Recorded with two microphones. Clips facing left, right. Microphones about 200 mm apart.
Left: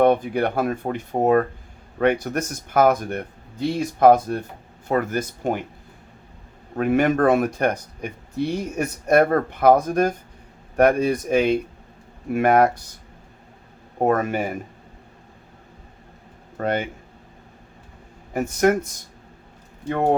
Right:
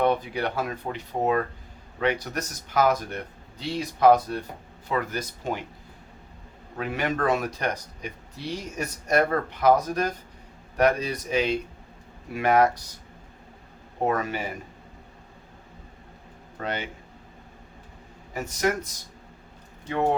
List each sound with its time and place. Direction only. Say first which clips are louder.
0.0 s speech: left 6 dB; 55° left (ahead or behind)
6.7 s speech: left 9 dB; 50° left (ahead or behind)
14.0 s speech: left 6 dB; 50° left (ahead or behind)
16.6 s speech: left 8 dB; 50° left (ahead or behind)
18.3 s speech: left 7 dB; 55° left (ahead or behind)
19.9 s speech: left 4 dB; 55° left (ahead or behind)